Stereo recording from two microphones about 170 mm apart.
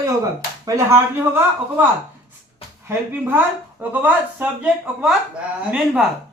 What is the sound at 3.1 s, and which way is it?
A man's voice, 10° right (ahead or behind).